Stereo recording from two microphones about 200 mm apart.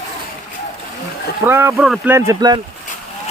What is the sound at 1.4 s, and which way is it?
Speech, 10° right (ahead or behind).